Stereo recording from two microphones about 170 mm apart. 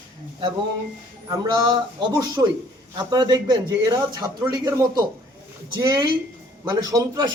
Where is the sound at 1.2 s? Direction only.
25° right (ahead or behind).